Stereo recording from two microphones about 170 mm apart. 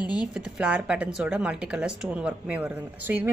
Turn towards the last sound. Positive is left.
turn(degrees=-10)  # may be behind; listen again after turning